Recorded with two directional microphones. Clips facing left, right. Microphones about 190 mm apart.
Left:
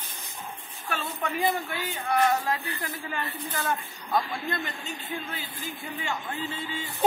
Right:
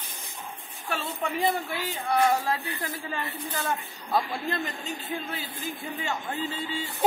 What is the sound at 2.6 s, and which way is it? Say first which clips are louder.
Speech: right 1 dB; 25° right (ahead or behind).